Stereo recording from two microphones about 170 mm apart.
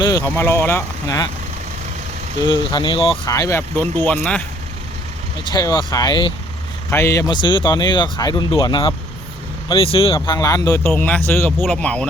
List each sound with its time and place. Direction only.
0.0 s speech: 20° left (ahead or behind)
2.4 s speech: 25° left (ahead or behind)
3.2 s speech: 20° left (ahead or behind)
4.0 s speech: 5° left (ahead or behind)
5.5 s speech: 25° left (ahead or behind)
10.2 s speech: 20° left (ahead or behind)
11.5 s speech: centre (ahead or behind)